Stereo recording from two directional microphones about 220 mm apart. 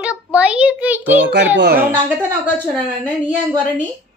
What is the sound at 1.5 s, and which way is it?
Speech, 45° right (ahead or behind).